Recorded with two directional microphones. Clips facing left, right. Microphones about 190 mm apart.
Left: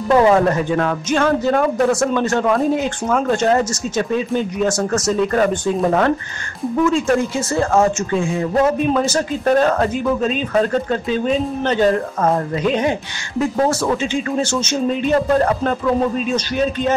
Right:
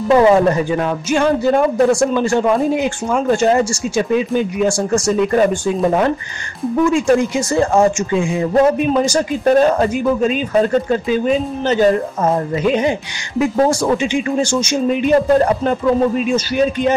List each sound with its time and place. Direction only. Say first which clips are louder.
0.1 s speech: right 2 dB; 10° right (ahead or behind)
6.8 s speech: right 3 dB; 15° right (ahead or behind)